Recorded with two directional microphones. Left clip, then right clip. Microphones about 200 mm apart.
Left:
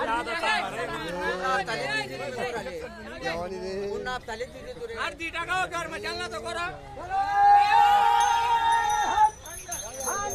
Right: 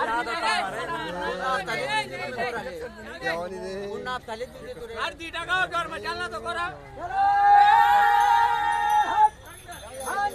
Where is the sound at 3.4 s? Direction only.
15° left (ahead or behind).